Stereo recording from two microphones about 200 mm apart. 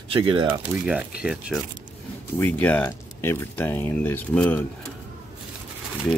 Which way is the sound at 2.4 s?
10° left (ahead or behind).